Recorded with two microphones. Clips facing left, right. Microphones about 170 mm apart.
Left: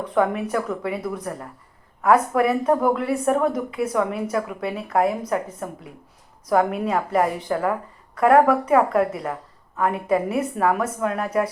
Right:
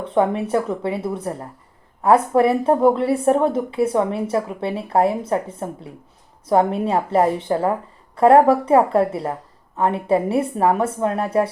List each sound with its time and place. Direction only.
0.0 s a woman's voice: 25° right (ahead or behind)